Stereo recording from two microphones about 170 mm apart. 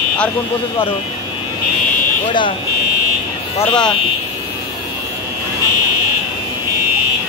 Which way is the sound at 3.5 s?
25° left (ahead or behind).